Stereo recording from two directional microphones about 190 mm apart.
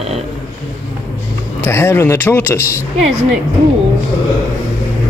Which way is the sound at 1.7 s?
15° left (ahead or behind).